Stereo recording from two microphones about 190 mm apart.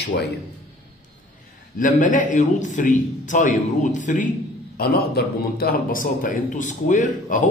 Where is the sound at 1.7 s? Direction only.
45° left (ahead or behind).